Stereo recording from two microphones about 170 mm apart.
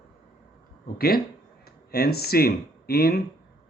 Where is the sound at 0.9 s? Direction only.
65° left (ahead or behind).